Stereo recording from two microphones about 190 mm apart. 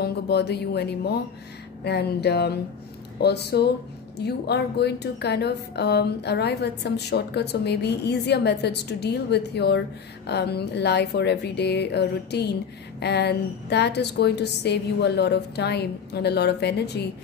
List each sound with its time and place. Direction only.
0.0 s a woman's voice: 60° left (ahead or behind)